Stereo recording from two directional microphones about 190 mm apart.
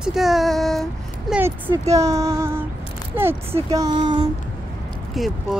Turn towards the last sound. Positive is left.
turn(degrees=0)  # may be behind; listen again after turning